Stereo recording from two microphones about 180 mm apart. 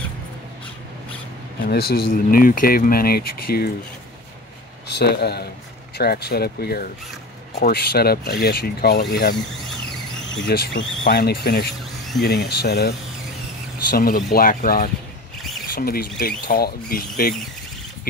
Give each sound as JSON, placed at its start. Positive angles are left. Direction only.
{"t": 1.6, "sound": "speech", "side_deg": 60}
{"t": 4.8, "sound": "speech", "side_deg": 65}
{"t": 10.4, "sound": "speech", "side_deg": 70}
{"t": 15.3, "sound": "a sound", "side_deg": 0}
{"t": 15.7, "sound": "speech", "side_deg": 55}